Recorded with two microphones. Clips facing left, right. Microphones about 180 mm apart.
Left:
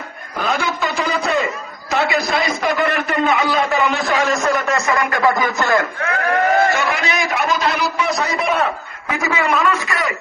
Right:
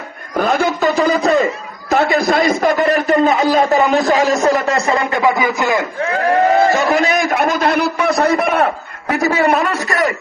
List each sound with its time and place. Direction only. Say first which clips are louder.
0.3 s a man's voice: right 6 dB; 50° right (ahead or behind); by 5.8 s 15° right (ahead or behind)
6.7 s a man's voice: right 6 dB; 40° right (ahead or behind); by 9.1 s 55° right (ahead or behind)
9.1 s a man's voice: right 5 dB; 35° right (ahead or behind)